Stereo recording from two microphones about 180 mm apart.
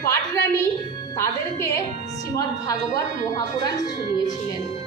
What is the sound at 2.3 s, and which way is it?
Speech, 20° left (ahead or behind).